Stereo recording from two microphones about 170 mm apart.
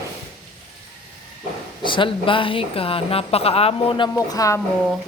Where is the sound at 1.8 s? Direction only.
30° left (ahead or behind).